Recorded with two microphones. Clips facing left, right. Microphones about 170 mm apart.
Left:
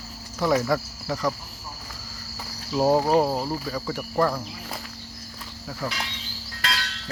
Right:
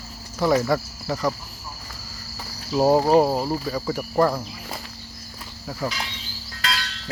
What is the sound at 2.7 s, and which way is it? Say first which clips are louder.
Speech: right 3 dB; 10° right (ahead or behind).